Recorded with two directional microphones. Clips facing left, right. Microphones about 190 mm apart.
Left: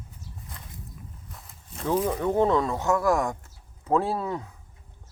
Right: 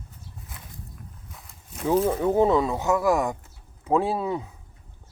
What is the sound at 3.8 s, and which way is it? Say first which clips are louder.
Speech: right 2 dB; 15° right (ahead or behind).